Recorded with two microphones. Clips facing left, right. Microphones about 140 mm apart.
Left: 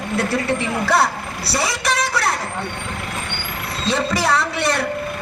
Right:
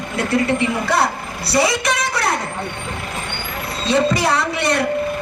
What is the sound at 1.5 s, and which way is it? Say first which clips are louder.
Speech: right 4 dB; 5° left (ahead or behind).